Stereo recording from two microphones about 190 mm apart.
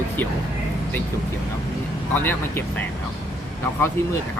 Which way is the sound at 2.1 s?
10° left (ahead or behind).